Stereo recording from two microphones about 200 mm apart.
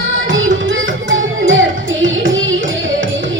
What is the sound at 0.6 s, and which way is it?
Music, 70° right (ahead or behind).